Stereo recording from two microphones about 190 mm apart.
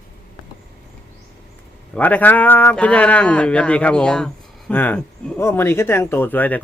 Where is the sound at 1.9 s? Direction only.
10° left (ahead or behind).